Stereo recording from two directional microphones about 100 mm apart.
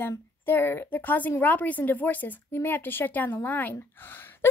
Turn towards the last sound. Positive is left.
turn(degrees=20)  # may be behind; listen again after turning